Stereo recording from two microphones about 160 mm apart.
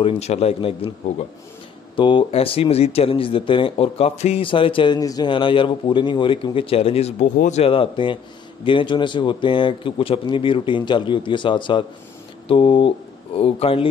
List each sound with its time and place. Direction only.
0.0 s speech: 40° left (ahead or behind)
7.6 s a man's voice: 35° left (ahead or behind)